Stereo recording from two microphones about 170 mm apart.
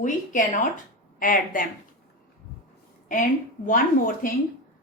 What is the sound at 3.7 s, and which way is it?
Speech, 55° left (ahead or behind).